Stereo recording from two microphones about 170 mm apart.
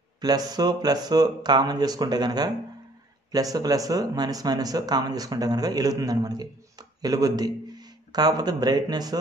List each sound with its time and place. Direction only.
0.2 s speech: 25° right (ahead or behind)